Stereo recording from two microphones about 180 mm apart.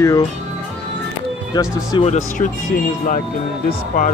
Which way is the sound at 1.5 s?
20° left (ahead or behind).